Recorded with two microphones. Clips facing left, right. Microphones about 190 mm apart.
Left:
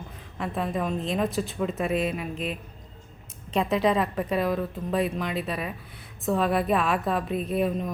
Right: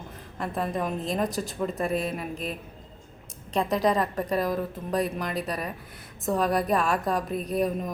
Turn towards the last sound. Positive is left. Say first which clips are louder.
# left 1 dB
turn(degrees=5)  # may be behind; listen again after turning